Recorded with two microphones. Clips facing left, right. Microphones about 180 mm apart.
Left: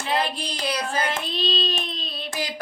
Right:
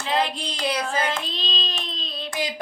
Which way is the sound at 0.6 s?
20° right (ahead or behind).